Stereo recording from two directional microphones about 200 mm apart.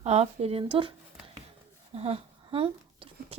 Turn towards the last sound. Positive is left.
turn(degrees=-25)  # may be behind; listen again after turning